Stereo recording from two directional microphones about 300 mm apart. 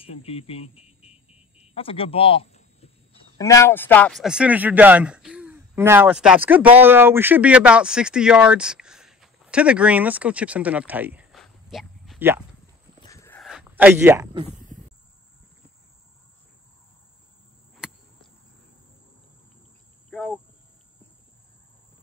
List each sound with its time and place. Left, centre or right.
0.0 s speech: centre
13.0 s a sound: centre
17.7 s chop: centre
20.1 s cricket: centre